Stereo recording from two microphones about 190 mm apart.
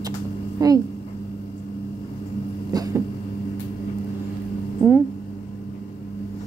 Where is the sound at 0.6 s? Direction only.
20° right (ahead or behind).